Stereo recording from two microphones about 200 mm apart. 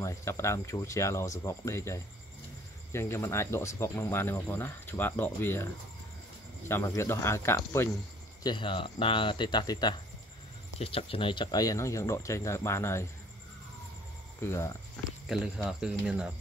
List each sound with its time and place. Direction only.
0.0 s speech: 15° left (ahead or behind)
6.7 s speech: 15° left (ahead or behind)
8.5 s speech: 25° left (ahead or behind)
14.4 s speech: 15° left (ahead or behind)
15.2 s speech: centre (ahead or behind)